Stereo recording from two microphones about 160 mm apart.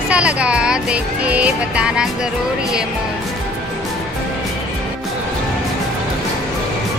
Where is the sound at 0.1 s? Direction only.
5° right (ahead or behind).